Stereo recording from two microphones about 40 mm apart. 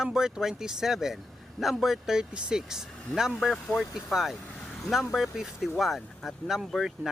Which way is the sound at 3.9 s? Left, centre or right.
Centre.